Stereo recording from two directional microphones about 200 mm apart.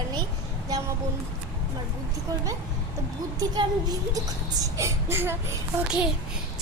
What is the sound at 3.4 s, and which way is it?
A child's voice, 20° right (ahead or behind).